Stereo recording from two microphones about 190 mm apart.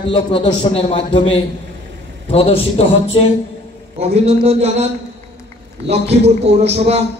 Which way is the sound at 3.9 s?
35° right (ahead or behind).